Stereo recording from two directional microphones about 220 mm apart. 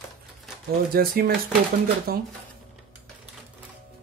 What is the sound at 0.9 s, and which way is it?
Speech, 45° right (ahead or behind).